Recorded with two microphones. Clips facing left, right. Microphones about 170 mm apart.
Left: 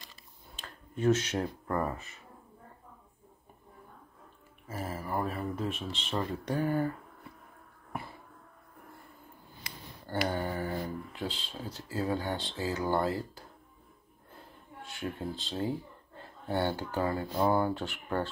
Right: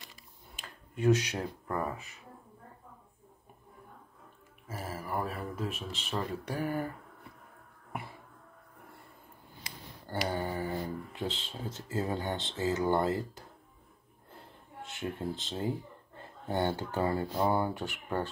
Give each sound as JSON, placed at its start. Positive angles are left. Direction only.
{"t": 0.1, "sound": "a sound", "side_deg": -10}
{"t": 4.6, "sound": "speech", "side_deg": -5}
{"t": 10.0, "sound": "speech", "side_deg": -15}
{"t": 14.8, "sound": "speech", "side_deg": -20}